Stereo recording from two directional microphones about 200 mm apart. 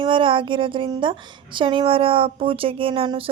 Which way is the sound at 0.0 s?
25° right (ahead or behind).